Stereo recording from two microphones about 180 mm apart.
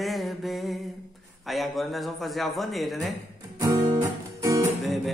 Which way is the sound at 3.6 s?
20° right (ahead or behind).